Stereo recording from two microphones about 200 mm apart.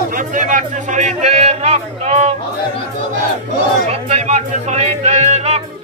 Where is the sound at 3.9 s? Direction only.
35° right (ahead or behind).